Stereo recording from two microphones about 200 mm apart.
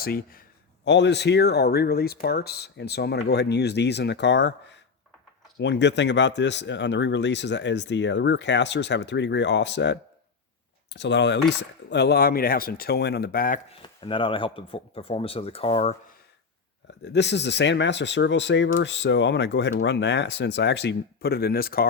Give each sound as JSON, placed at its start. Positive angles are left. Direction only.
{"t": 0.0, "sound": "speech", "side_deg": 50}
{"t": 0.9, "sound": "speech", "side_deg": 60}
{"t": 13.7, "sound": "speech", "side_deg": 25}
{"t": 17.0, "sound": "speech", "side_deg": 60}